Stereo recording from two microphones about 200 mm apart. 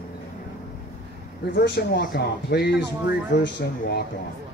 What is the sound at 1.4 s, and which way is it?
Speech, 55° left (ahead or behind).